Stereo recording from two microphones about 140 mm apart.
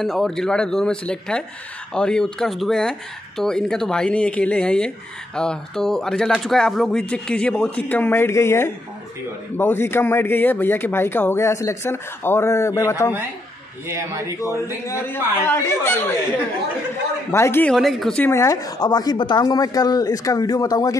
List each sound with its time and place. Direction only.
0.0 s speech: centre (ahead or behind); by 13.1 s 20° left (ahead or behind)
13.8 s a man's voice: 20° right (ahead or behind)
14.9 s speech: 20° left (ahead or behind)
17.6 s speech: centre (ahead or behind)
18.2 s speech: 20° left (ahead or behind)